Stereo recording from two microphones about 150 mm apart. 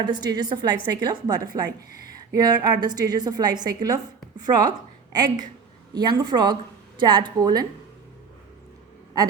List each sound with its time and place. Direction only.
0.0 s a woman's voice: 30° right (ahead or behind)